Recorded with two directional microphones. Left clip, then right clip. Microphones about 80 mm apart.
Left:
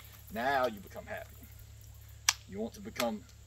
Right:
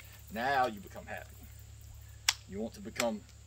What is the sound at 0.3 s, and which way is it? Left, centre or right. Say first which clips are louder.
Speech: even; right.